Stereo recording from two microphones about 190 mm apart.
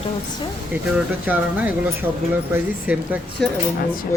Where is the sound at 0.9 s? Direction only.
10° right (ahead or behind).